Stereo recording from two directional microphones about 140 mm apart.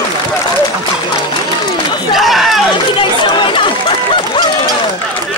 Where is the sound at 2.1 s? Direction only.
Centre (ahead or behind).